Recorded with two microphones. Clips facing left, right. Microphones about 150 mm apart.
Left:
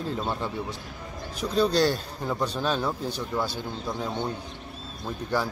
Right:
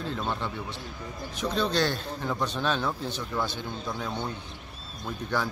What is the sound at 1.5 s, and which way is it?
Speech, 40° left (ahead or behind).